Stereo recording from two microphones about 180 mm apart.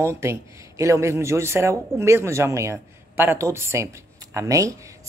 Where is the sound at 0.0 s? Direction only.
15° right (ahead or behind).